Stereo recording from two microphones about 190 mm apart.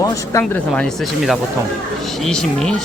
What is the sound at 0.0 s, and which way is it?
Speech, 15° left (ahead or behind).